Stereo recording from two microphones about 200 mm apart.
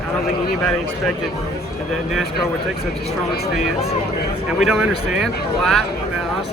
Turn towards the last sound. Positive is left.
turn(degrees=0)  # may be behind; listen again after turning